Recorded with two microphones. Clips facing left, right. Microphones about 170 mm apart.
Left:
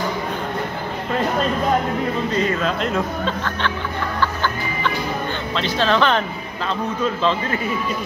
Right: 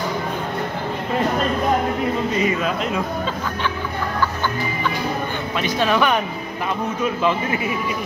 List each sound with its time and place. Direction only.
2.3 s speech: 10° right (ahead or behind)
5.6 s speech: 10° right (ahead or behind)
7.2 s speech: 15° right (ahead or behind)